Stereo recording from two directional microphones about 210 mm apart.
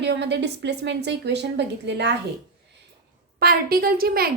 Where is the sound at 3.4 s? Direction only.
45° right (ahead or behind).